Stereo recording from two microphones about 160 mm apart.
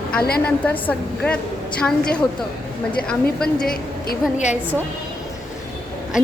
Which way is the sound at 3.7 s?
70° left (ahead or behind).